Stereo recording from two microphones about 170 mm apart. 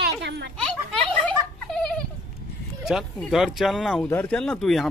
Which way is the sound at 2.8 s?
Centre (ahead or behind).